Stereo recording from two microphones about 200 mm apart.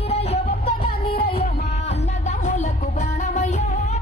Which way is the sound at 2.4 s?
40° left (ahead or behind).